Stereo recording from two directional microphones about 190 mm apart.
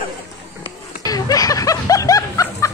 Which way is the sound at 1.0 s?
20° left (ahead or behind).